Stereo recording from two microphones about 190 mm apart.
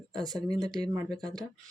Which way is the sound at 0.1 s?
20° right (ahead or behind).